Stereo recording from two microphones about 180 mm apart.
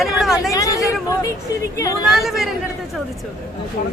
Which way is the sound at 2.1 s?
Centre (ahead or behind).